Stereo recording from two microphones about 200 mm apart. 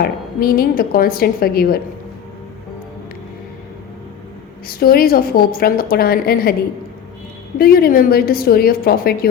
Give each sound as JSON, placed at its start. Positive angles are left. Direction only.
{"t": 0.0, "sound": "a woman's voice", "side_deg": 50}
{"t": 4.7, "sound": "a woman's voice", "side_deg": 50}
{"t": 7.6, "sound": "a woman's voice", "side_deg": 50}